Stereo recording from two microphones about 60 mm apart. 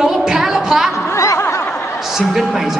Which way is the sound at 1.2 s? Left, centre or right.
Left.